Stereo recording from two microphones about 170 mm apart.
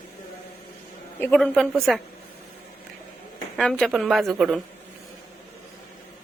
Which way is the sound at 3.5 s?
5° left (ahead or behind).